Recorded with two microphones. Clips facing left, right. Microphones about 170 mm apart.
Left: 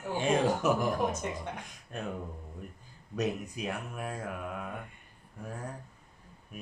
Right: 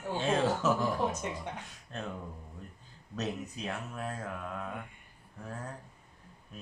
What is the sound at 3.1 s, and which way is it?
Speech, 10° left (ahead or behind).